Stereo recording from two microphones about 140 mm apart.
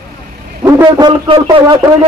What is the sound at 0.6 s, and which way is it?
Speech, 30° right (ahead or behind).